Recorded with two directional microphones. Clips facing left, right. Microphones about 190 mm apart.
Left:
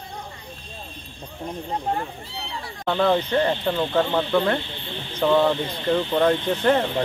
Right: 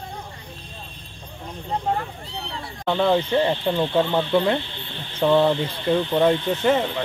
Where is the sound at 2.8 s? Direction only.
5° right (ahead or behind).